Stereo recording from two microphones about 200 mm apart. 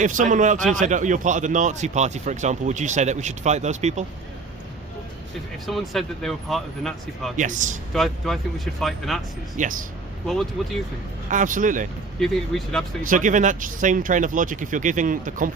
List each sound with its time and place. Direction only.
0.0 s speech: 40° right (ahead or behind)
5.6 s speech: centre (ahead or behind)
7.3 s speech: 40° right (ahead or behind)
7.9 s speech: centre (ahead or behind)
9.6 s speech: 40° right (ahead or behind)
10.2 s speech: centre (ahead or behind)
11.3 s speech: 40° right (ahead or behind)
12.2 s speech: centre (ahead or behind)
13.0 s speech: 40° right (ahead or behind)